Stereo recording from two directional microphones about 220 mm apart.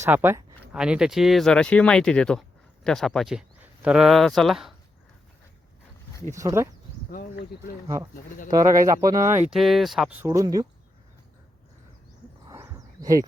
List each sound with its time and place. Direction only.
0.0 s speech: 10° right (ahead or behind)
6.3 s speech: 15° right (ahead or behind)
7.1 s speech: 40° left (ahead or behind)
8.4 s speech: 15° right (ahead or behind)
9.6 s speech: centre (ahead or behind)
12.5 s a sound: 15° right (ahead or behind)